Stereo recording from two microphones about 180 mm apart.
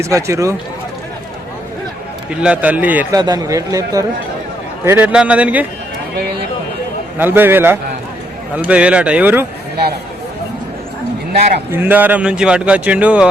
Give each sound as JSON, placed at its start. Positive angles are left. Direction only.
{"t": 0.0, "sound": "speech", "side_deg": -15}
{"t": 2.4, "sound": "speech", "side_deg": -5}
{"t": 3.2, "sound": "a man's voice", "side_deg": -20}
{"t": 4.9, "sound": "speech", "side_deg": -5}
{"t": 7.2, "sound": "speech", "side_deg": -10}
{"t": 11.7, "sound": "speech", "side_deg": -10}